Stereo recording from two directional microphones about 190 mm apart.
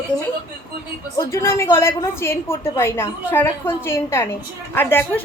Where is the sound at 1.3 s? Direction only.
15° left (ahead or behind).